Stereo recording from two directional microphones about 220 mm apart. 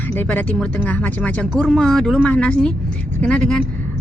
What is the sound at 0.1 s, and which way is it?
Speech, 10° left (ahead or behind).